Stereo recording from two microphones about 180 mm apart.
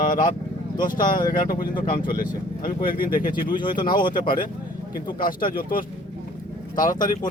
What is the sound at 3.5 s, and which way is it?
Speech, 25° left (ahead or behind).